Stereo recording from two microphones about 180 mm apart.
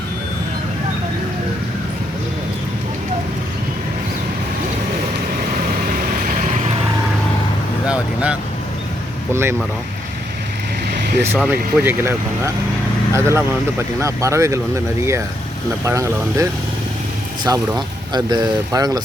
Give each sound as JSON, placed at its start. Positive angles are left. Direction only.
{"t": 5.9, "sound": "vehicle", "side_deg": -50}
{"t": 7.9, "sound": "vehicle", "side_deg": -5}
{"t": 9.3, "sound": "speech", "side_deg": -15}
{"t": 11.3, "sound": "speech", "side_deg": -10}
{"t": 13.1, "sound": "speech", "side_deg": -15}
{"t": 15.8, "sound": "speech", "side_deg": -15}